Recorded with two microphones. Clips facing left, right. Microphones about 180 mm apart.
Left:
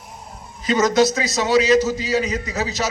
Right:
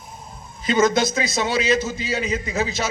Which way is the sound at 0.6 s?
40° left (ahead or behind).